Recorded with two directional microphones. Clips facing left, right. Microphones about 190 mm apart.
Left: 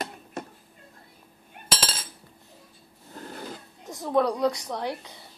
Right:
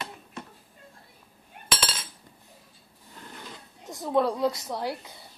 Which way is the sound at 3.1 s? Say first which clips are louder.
Left 6 dB; 40° left (ahead or behind).